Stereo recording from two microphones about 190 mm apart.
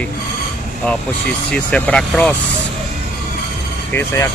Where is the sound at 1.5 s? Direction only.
5° left (ahead or behind).